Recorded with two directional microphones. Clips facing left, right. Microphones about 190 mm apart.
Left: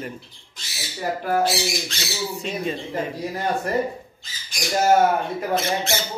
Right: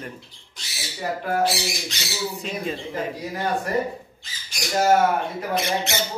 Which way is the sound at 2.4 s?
Centre (ahead or behind).